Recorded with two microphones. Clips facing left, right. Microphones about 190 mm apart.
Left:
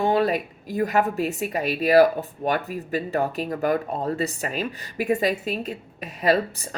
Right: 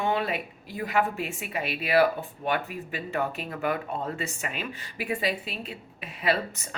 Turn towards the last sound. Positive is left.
turn(degrees=40)  # may be behind; listen again after turning